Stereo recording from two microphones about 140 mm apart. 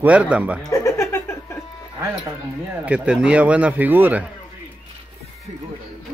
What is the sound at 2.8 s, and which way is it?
Speech, 10° right (ahead or behind).